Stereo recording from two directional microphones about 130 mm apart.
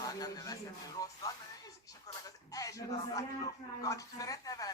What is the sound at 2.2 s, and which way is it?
A man's voice, 25° left (ahead or behind).